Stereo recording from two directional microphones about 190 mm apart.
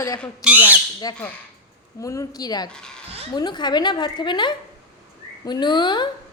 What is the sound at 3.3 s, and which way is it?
A woman's voice, 20° left (ahead or behind).